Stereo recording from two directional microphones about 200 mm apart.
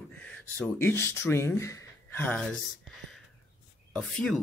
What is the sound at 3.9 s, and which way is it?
Speech, 5° left (ahead or behind).